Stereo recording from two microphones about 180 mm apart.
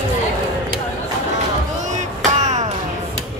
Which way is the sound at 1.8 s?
40° right (ahead or behind).